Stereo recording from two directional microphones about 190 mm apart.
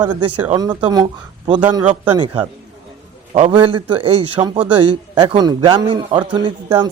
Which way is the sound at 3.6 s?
25° right (ahead or behind).